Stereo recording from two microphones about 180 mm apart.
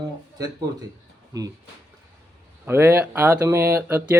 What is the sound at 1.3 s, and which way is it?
Speech, 20° right (ahead or behind).